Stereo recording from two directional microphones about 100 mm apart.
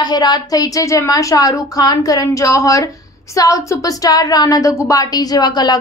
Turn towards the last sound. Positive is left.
turn(degrees=45)  # may be behind; listen again after turning